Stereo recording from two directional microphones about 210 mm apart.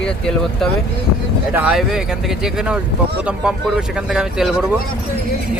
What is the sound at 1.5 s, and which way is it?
Speech, 10° right (ahead or behind).